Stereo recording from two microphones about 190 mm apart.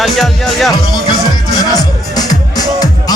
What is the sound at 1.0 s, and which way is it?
Music, 20° left (ahead or behind).